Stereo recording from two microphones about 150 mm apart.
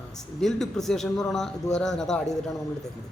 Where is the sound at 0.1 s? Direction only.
5° left (ahead or behind).